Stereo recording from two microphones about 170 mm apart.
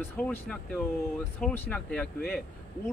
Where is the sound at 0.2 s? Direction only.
5° left (ahead or behind).